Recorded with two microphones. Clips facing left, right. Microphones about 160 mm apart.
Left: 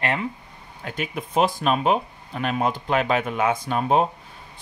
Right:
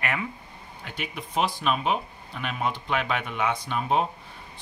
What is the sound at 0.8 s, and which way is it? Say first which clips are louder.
Speech: left 6 dB; 45° left (ahead or behind).